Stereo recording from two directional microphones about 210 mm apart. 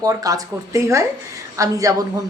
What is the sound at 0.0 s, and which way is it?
Speech, 15° right (ahead or behind).